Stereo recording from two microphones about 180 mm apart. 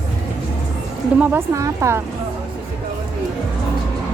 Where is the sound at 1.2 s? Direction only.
15° right (ahead or behind).